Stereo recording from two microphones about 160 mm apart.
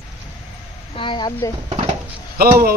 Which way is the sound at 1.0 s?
30° left (ahead or behind).